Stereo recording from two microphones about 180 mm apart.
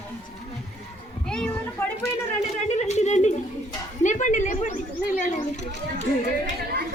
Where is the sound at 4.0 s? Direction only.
45° left (ahead or behind).